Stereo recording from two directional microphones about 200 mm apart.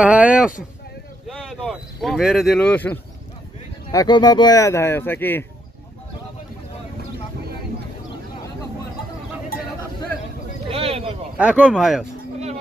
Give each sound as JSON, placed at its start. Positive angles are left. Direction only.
{"t": 0.0, "sound": "speech", "side_deg": -5}
{"t": 3.9, "sound": "speech", "side_deg": 20}
{"t": 10.7, "sound": "a sound", "side_deg": -30}
{"t": 11.3, "sound": "speech", "side_deg": -5}